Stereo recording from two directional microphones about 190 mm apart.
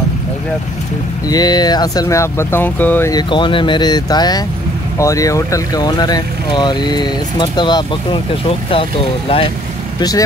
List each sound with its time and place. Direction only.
1.3 s speech: 20° left (ahead or behind)
9.9 s speech: 20° left (ahead or behind)